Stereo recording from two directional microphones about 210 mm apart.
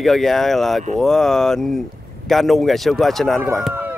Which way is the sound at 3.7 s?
10° right (ahead or behind).